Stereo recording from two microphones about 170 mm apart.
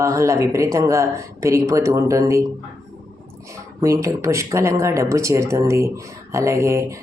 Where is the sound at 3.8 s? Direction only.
20° right (ahead or behind).